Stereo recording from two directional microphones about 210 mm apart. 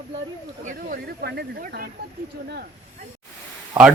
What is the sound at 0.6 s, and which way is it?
Speech, 45° right (ahead or behind).